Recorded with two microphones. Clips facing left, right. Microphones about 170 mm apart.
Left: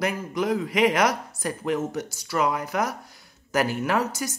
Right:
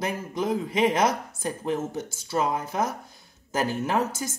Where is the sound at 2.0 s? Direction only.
75° left (ahead or behind).